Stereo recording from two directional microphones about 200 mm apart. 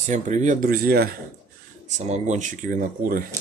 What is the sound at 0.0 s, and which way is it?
Speech, 35° right (ahead or behind).